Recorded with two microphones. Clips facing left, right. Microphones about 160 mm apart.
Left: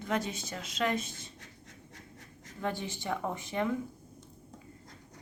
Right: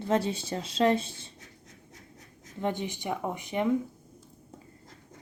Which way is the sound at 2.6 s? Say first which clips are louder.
Right 4 dB; 20° right (ahead or behind).